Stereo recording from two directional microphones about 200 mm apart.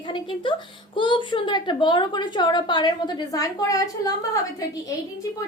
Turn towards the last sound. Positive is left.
turn(degrees=20)  # may be behind; listen again after turning